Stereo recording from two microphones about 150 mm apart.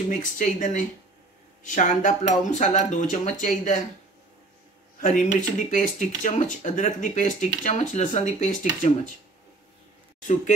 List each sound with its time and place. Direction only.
0.1 s speech: 55° left (ahead or behind)
5.0 s speech: 55° left (ahead or behind)